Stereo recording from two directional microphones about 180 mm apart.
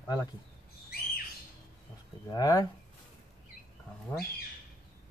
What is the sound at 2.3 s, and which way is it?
Speech, 20° left (ahead or behind).